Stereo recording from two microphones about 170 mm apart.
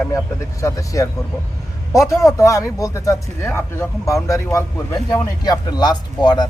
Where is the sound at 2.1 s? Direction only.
20° left (ahead or behind).